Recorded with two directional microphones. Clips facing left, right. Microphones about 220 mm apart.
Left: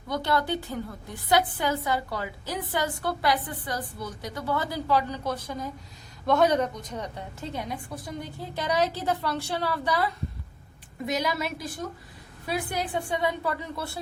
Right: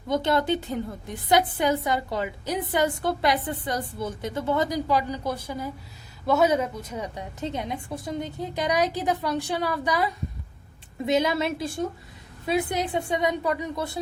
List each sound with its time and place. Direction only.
0.1 s a woman's voice: 20° right (ahead or behind)
11.0 s a woman's voice: 25° right (ahead or behind)